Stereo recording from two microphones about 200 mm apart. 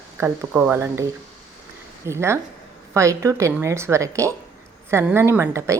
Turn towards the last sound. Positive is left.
turn(degrees=-15)  # may be behind; listen again after turning